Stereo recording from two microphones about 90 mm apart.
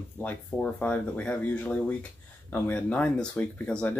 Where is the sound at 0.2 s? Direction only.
15° left (ahead or behind).